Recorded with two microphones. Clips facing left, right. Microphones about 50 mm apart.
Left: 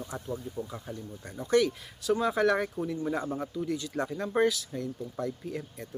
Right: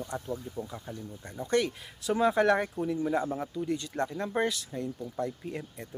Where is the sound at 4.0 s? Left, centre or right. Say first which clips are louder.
Left 4 dB; centre.